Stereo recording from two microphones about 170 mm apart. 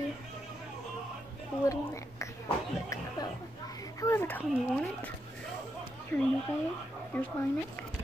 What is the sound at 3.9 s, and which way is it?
Speech, 15° left (ahead or behind).